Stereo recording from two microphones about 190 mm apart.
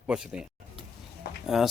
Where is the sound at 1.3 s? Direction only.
60° left (ahead or behind).